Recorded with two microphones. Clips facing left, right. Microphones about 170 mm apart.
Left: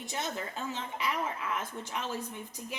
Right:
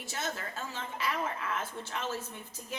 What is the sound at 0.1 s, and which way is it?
Speech, 20° left (ahead or behind).